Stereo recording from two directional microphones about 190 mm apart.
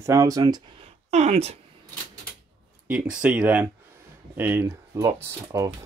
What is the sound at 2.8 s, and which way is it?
Speech, 5° right (ahead or behind).